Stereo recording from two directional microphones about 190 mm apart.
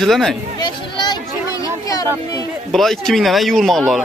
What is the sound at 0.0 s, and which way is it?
Speech, centre (ahead or behind).